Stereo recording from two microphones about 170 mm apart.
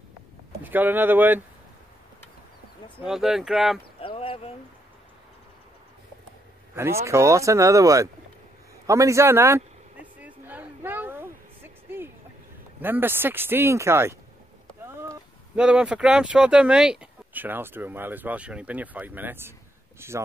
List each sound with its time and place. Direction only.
0.7 s speech: 10° right (ahead or behind)
3.1 s speech: centre (ahead or behind)
4.0 s a sound: 30° left (ahead or behind)
6.7 s speech: 15° right (ahead or behind)
10.1 s a sound: 10° right (ahead or behind)
12.8 s speech: 10° right (ahead or behind)
15.5 s speech: 5° right (ahead or behind)